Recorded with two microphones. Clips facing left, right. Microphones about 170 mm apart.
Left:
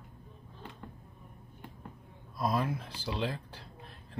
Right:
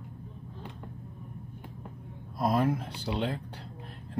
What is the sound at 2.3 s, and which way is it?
Speech, 50° right (ahead or behind).